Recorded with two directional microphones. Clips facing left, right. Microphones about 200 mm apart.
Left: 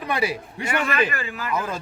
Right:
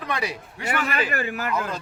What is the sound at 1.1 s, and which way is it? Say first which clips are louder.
Speech: right 4 dB; 60° right (ahead or behind).